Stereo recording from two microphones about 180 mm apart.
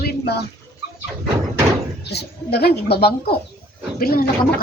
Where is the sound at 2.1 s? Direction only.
65° left (ahead or behind).